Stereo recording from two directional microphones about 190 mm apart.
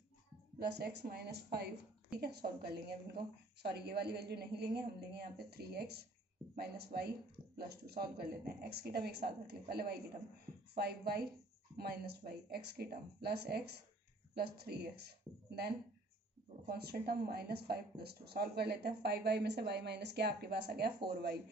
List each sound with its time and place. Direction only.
0.6 s speech: 60° right (ahead or behind)